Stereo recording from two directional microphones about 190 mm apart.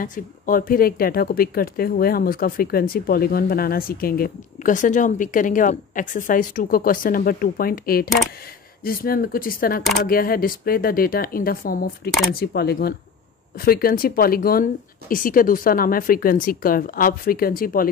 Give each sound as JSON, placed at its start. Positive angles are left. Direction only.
{"t": 0.0, "sound": "speech", "side_deg": 45}